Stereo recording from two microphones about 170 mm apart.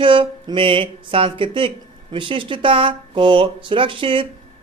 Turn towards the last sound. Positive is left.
turn(degrees=-30)  # may be behind; listen again after turning